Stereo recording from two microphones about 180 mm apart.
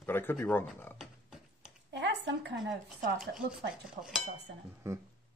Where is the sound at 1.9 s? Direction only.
75° right (ahead or behind).